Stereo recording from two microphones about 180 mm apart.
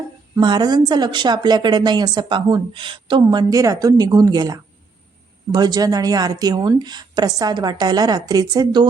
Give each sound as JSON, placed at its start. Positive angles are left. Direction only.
{"t": 0.3, "sound": "speech", "side_deg": -25}